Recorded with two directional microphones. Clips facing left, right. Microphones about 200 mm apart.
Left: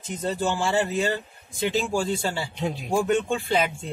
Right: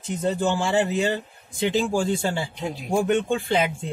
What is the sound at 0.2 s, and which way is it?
Speech, 20° right (ahead or behind).